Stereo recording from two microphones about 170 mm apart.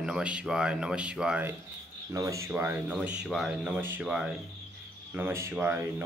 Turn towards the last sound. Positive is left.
turn(degrees=-15)  # may be behind; listen again after turning